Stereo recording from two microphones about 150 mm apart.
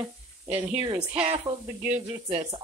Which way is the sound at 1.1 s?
40° right (ahead or behind).